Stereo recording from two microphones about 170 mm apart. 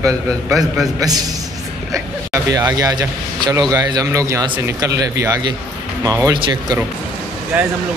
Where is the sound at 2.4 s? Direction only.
20° right (ahead or behind).